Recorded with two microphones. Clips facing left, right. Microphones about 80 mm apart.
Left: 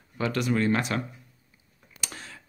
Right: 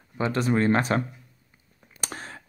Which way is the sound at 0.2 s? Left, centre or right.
Right.